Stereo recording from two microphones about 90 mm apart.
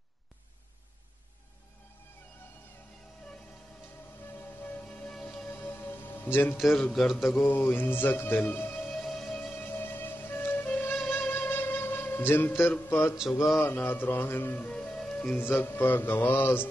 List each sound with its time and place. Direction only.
4.8 s music: 10° left (ahead or behind)
5.5 s music: 25° left (ahead or behind)
6.6 s a man's voice: centre (ahead or behind)
7.3 s music: 25° left (ahead or behind)
8.8 s music: 5° left (ahead or behind)
9.6 s music: 20° left (ahead or behind)
13.7 s speech: 20° left (ahead or behind)
15.3 s music: 20° left (ahead or behind)